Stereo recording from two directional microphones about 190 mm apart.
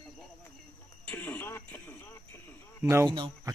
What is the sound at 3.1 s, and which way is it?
Speech, 25° right (ahead or behind).